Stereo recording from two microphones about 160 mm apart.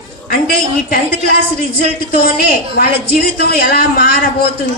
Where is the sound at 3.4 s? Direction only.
70° left (ahead or behind).